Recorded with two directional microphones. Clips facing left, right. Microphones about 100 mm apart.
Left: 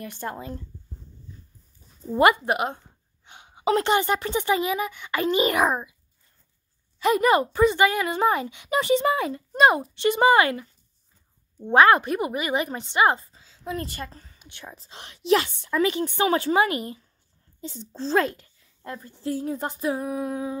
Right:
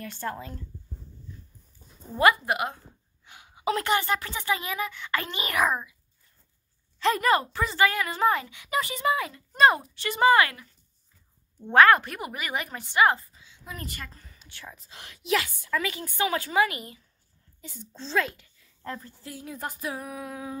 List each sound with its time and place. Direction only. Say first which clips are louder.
0.0 s speech: left 1 dB; 15° left (ahead or behind)
2.1 s a woman's voice: left 3 dB; 25° left (ahead or behind)
7.0 s a woman's voice: left 3 dB; 15° left (ahead or behind)
13.3 s a sound: left 10 dB; 35° left (ahead or behind)
14.4 s a woman's voice: left 2 dB; 20° left (ahead or behind)
18.0 s speech: left 5 dB; 45° left (ahead or behind)
18.9 s speech: even; 15° left (ahead or behind)
19.2 s a woman's voice: left 10 dB; 35° left (ahead or behind)